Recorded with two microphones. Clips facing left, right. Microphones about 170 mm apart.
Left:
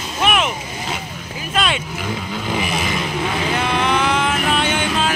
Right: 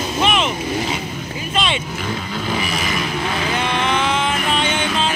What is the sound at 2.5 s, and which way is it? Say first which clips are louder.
Vehicle: left 2 dB; 20° left (ahead or behind).